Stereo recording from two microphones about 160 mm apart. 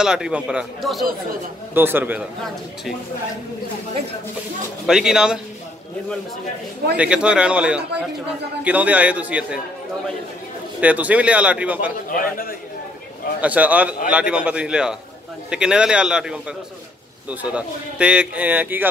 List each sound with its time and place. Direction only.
0.0 s a man's voice: 5° right (ahead or behind)
1.7 s speech: 15° right (ahead or behind)
4.8 s a man's voice: 5° right (ahead or behind)
7.0 s speech: 5° right (ahead or behind)
10.8 s speech: 10° right (ahead or behind)
12.1 s a man's voice: 65° left (ahead or behind)
13.4 s a man's voice: 10° right (ahead or behind)